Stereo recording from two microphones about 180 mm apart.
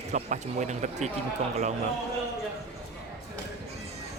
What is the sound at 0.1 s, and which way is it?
Speech, 40° right (ahead or behind).